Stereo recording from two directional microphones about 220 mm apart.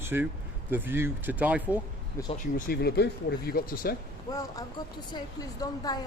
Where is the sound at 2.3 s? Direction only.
35° left (ahead or behind).